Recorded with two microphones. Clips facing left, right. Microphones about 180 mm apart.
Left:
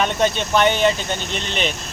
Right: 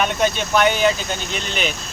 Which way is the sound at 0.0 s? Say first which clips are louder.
Even; 5° right (ahead or behind).